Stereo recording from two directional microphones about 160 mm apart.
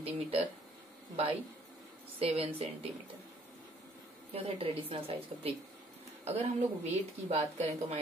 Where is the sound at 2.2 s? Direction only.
40° right (ahead or behind).